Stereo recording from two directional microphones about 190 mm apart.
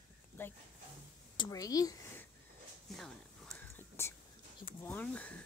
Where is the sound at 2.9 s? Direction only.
Centre (ahead or behind).